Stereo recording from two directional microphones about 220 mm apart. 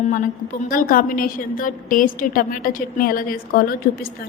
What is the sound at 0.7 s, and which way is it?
A woman's voice, 40° left (ahead or behind).